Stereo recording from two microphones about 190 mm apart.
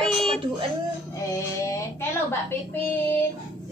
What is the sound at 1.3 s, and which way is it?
Speech, 15° left (ahead or behind).